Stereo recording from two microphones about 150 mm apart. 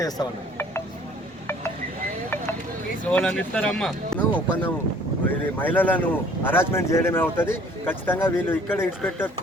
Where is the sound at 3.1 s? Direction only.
10° left (ahead or behind).